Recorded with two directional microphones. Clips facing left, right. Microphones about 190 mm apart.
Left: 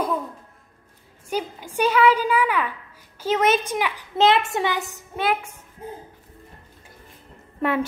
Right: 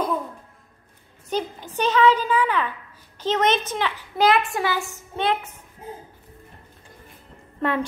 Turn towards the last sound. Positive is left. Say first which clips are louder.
# left 1 dB
turn(degrees=10)  # may be behind; listen again after turning